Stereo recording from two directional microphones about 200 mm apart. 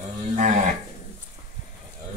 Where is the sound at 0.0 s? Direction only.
35° right (ahead or behind).